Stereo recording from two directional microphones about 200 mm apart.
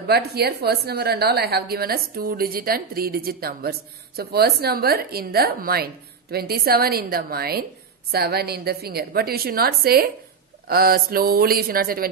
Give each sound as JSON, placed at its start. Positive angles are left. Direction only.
{"t": 0.0, "sound": "a woman's voice", "side_deg": -50}